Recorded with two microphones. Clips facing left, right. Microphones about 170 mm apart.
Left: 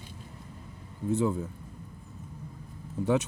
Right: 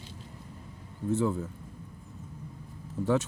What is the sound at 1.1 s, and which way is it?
Speech, 15° left (ahead or behind).